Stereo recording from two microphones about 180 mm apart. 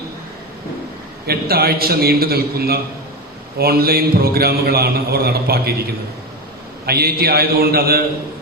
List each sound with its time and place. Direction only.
1.3 s a man's voice: 60° right (ahead or behind)
6.8 s a man's voice: 60° right (ahead or behind)